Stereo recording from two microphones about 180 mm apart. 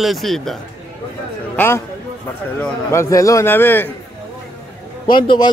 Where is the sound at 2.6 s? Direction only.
15° left (ahead or behind).